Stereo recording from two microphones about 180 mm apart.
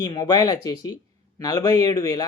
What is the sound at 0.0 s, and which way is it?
A man's voice, 25° left (ahead or behind).